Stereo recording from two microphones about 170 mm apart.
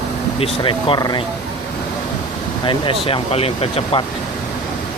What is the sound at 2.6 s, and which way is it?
Speech, 30° left (ahead or behind).